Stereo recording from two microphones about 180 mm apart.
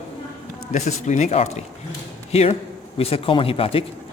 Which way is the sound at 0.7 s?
40° left (ahead or behind).